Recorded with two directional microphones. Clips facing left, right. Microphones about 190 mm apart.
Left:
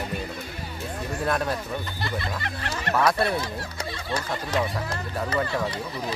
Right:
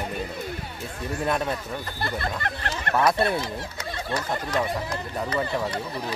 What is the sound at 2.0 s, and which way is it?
Music, 50° right (ahead or behind).